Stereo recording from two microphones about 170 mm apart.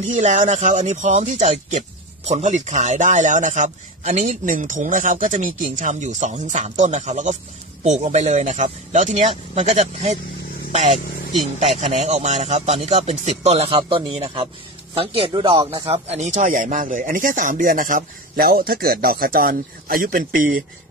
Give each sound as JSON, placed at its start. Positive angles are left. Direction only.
{"t": 0.1, "sound": "speech", "side_deg": -45}